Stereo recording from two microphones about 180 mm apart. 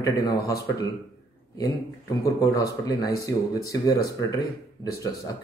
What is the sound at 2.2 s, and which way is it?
Speech, 20° left (ahead or behind).